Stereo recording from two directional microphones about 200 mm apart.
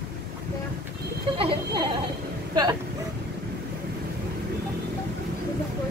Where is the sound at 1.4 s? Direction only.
25° right (ahead or behind).